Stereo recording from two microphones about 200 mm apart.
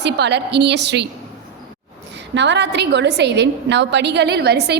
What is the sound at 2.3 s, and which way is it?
A woman's voice, 60° right (ahead or behind).